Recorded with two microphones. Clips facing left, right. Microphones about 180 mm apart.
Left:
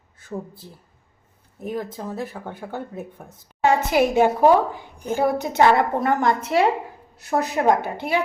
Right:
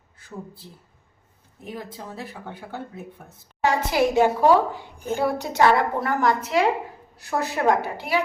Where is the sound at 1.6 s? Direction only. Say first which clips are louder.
Left 7 dB; 45° left (ahead or behind).